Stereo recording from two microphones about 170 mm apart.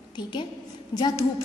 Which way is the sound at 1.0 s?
20° left (ahead or behind).